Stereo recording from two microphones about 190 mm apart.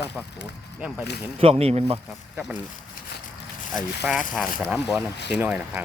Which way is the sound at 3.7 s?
Centre (ahead or behind).